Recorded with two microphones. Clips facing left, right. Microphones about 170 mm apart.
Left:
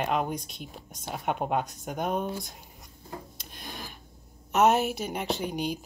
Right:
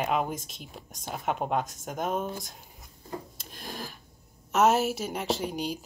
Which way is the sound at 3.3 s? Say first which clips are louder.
Right 2 dB; centre (ahead or behind).